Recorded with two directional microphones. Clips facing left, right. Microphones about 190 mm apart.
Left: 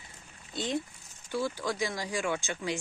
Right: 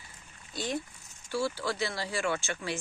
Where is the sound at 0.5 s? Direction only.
20° left (ahead or behind).